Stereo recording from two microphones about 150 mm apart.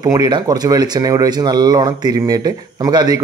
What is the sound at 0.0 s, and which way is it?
Speech, 25° right (ahead or behind).